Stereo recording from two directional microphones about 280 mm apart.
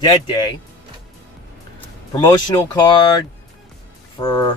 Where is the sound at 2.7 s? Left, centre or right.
Centre.